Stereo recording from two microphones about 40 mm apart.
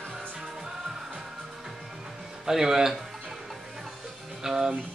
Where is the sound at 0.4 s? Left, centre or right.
Centre.